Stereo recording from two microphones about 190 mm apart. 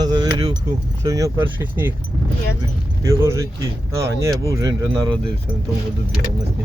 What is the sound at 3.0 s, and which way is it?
Speech, 15° right (ahead or behind).